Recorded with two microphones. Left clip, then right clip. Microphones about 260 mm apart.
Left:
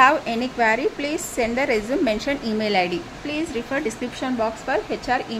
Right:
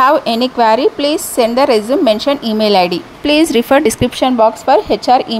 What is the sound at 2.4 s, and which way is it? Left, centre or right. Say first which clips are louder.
Speech: right 10 dB; right.